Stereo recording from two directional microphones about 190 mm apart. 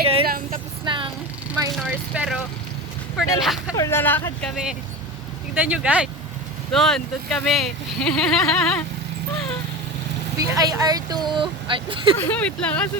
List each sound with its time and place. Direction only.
0.0 s vehicle: 30° right (ahead or behind)
0.3 s vehicle: 50° right (ahead or behind)
0.9 s speech: 25° right (ahead or behind)
1.9 s speech: 5° right (ahead or behind)
3.8 s speech: 15° left (ahead or behind)
5.5 s speech: 5° right (ahead or behind)
10.5 s speech: 20° right (ahead or behind)
12.1 s speech: 10° left (ahead or behind)